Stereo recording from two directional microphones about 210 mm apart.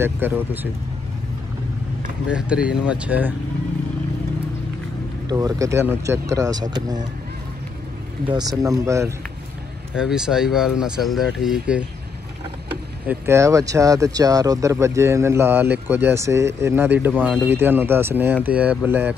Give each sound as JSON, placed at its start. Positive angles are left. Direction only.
{"t": 0.0, "sound": "speech", "side_deg": -10}
{"t": 2.3, "sound": "speech", "side_deg": -5}
{"t": 5.3, "sound": "speech", "side_deg": -15}
{"t": 8.3, "sound": "speech", "side_deg": -20}
{"t": 9.9, "sound": "speech", "side_deg": -5}
{"t": 13.0, "sound": "speech", "side_deg": -10}